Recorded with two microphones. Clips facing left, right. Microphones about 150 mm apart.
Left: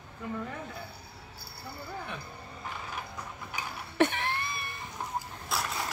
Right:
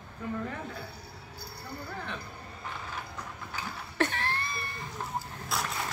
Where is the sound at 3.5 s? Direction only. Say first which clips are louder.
Left 3 dB; 15° left (ahead or behind).